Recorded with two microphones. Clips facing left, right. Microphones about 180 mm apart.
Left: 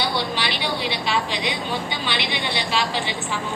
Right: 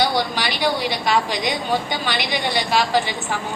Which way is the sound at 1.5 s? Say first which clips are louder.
Right 4 dB; 45° right (ahead or behind).